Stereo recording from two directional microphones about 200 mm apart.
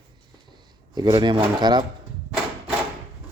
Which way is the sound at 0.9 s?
20° right (ahead or behind).